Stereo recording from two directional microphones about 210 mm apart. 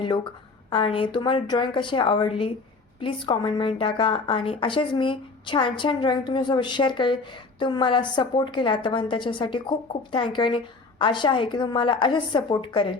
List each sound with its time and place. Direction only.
0.7 s a woman's voice: 25° left (ahead or behind)